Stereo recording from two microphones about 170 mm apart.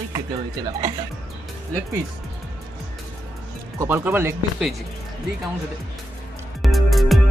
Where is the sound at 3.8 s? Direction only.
10° right (ahead or behind).